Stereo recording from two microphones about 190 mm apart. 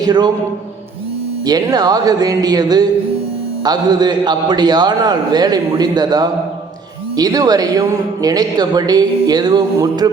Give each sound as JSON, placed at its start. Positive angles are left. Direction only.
{"t": 0.0, "sound": "speech", "side_deg": -20}
{"t": 1.5, "sound": "speech", "side_deg": -20}